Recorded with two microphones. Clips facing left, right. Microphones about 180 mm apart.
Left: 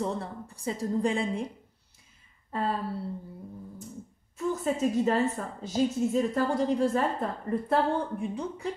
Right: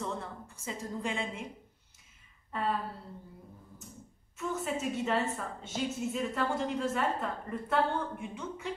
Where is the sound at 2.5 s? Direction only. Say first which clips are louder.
Left 3 dB; 35° left (ahead or behind).